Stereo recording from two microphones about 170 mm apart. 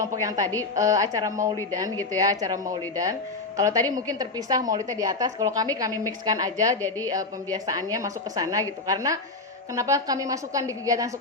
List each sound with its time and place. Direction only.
0.0 s a woman's voice: 20° right (ahead or behind)